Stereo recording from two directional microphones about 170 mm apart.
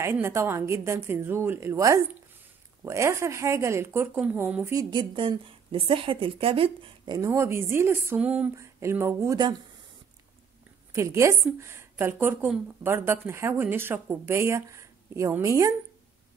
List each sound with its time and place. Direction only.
0.0 s a woman's voice: 15° right (ahead or behind)
4.7 s a woman's voice: 30° right (ahead or behind)
7.2 s a woman's voice: 15° right (ahead or behind)
10.9 s a woman's voice: 15° right (ahead or behind)